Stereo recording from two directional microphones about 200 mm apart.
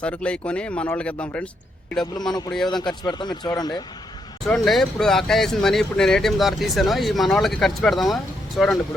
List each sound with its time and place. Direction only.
0.0 s speech: 5° left (ahead or behind)
2.6 s speech: 20° left (ahead or behind)
4.4 s speech: centre (ahead or behind)